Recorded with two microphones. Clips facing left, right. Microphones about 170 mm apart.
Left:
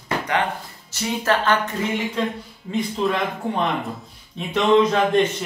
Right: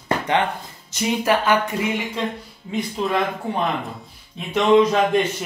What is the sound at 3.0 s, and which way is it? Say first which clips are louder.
Speech: left 2 dB; 5° right (ahead or behind).